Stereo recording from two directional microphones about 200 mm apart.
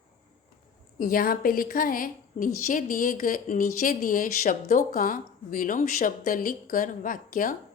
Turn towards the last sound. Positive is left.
turn(degrees=45)  # may be behind; listen again after turning